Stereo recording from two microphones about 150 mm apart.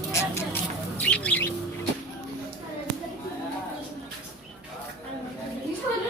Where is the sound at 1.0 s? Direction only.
10° left (ahead or behind).